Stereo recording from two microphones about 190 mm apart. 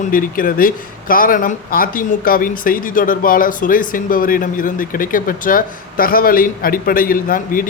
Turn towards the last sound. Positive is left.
turn(degrees=45)  # may be behind; listen again after turning